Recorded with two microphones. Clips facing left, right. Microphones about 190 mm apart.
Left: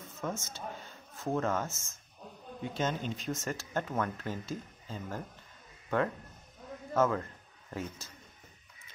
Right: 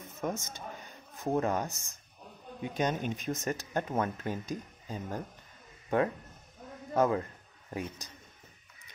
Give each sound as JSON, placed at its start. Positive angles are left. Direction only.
{"t": 0.0, "sound": "a man's voice", "side_deg": -15}